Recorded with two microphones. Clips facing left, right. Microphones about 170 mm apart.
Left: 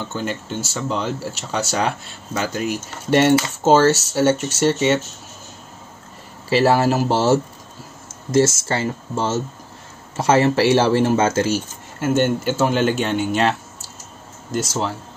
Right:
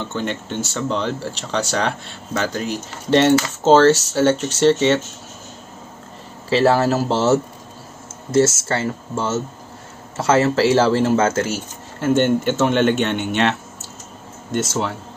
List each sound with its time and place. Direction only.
0.0 s speech: 5° left (ahead or behind)
6.5 s speech: 10° left (ahead or behind)
8.3 s speech: 15° left (ahead or behind)
12.0 s speech: 5° left (ahead or behind)